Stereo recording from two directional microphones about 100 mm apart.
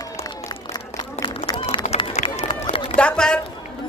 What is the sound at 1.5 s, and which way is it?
Run, 45° left (ahead or behind).